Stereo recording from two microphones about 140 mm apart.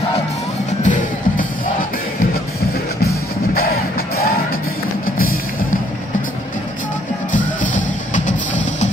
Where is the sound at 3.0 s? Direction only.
90° left.